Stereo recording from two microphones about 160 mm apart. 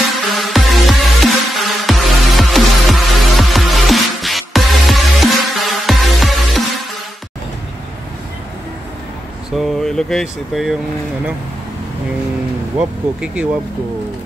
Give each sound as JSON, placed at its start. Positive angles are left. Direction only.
{"t": 0.1, "sound": "music", "side_deg": 0}
{"t": 9.6, "sound": "a sound", "side_deg": 5}
{"t": 12.7, "sound": "speech", "side_deg": -5}